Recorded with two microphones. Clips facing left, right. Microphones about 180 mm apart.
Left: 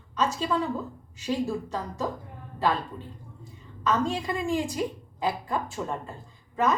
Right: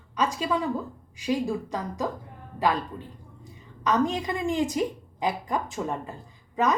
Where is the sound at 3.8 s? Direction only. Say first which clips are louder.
Right 2 dB; 20° right (ahead or behind).